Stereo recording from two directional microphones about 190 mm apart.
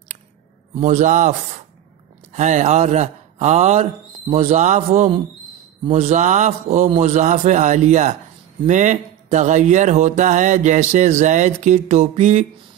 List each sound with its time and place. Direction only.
0.7 s speech: 40° right (ahead or behind)
2.3 s speech: 40° right (ahead or behind)